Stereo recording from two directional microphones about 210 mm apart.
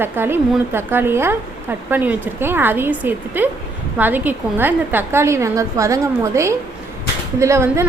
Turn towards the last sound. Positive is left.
turn(degrees=-15)  # may be behind; listen again after turning